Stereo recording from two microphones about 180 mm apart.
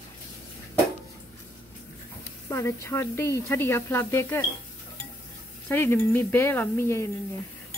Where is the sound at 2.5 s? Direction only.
15° left (ahead or behind).